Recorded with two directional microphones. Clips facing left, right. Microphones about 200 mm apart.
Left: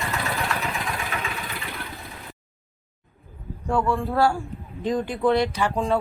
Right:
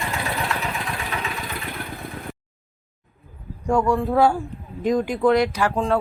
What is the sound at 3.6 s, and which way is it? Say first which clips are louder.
Speech: right 4 dB; 10° right (ahead or behind).